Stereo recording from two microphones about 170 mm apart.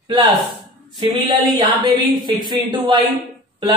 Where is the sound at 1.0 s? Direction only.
30° right (ahead or behind).